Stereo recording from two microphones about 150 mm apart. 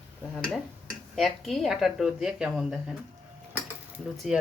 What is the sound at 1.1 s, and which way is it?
Speech, centre (ahead or behind).